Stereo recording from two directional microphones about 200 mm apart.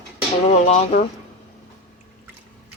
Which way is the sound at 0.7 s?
35° left (ahead or behind).